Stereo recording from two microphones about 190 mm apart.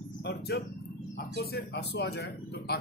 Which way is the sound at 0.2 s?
60° left (ahead or behind).